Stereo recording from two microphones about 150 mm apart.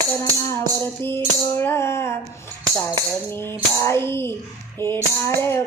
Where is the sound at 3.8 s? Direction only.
15° left (ahead or behind).